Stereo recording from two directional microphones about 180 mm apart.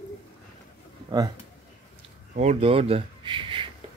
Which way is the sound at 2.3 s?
35° right (ahead or behind).